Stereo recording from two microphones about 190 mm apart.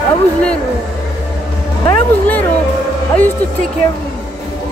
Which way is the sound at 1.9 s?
10° left (ahead or behind).